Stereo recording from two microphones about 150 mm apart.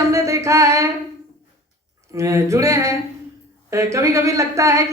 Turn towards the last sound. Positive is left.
turn(degrees=-20)  # may be behind; listen again after turning